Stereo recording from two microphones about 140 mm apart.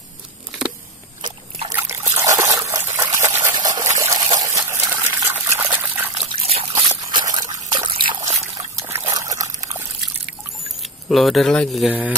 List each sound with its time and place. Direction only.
1.7 s trickle: 20° right (ahead or behind)
3.0 s water: 20° right (ahead or behind)
6.1 s liquid: 45° right (ahead or behind)
7.1 s trickle: 30° right (ahead or behind)
8.3 s trickle: 20° right (ahead or behind)
10.8 s speech: centre (ahead or behind)